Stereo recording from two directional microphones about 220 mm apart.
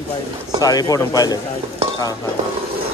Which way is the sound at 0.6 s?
15° left (ahead or behind).